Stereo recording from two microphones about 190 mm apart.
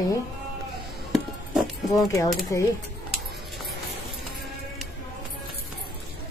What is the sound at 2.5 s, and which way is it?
Speech, 15° left (ahead or behind).